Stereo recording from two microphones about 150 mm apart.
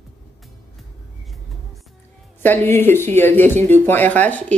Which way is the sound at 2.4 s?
15° left (ahead or behind).